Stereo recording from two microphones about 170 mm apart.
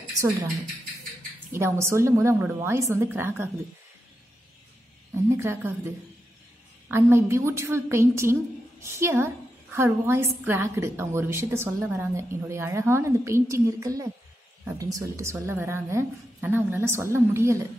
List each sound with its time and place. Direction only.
1.5 s a woman's voice: 15° right (ahead or behind)
5.1 s a sound: 15° right (ahead or behind)
6.9 s a woman's voice: 15° right (ahead or behind)